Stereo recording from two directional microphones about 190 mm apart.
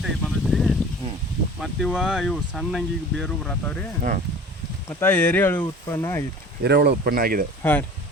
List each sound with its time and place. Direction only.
0.0 s a sound: centre (ahead or behind)
1.6 s speech: 5° left (ahead or behind)
4.9 s speech: 10° left (ahead or behind)
6.6 s speech: 60° right (ahead or behind)
7.6 s speech: 10° left (ahead or behind)